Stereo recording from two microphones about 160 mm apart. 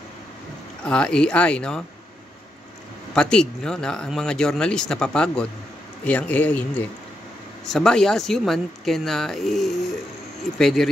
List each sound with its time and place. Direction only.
0.8 s speech: 5° left (ahead or behind)
3.2 s speech: 5° left (ahead or behind)